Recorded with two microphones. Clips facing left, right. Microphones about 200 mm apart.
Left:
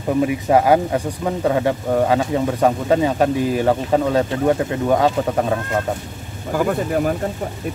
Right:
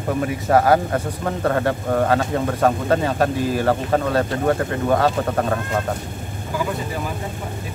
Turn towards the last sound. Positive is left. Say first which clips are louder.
# left 7 dB
turn(degrees=55)  # may be behind; listen again after turning